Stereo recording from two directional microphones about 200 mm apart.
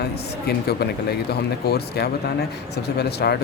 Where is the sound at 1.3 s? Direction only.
55° left (ahead or behind).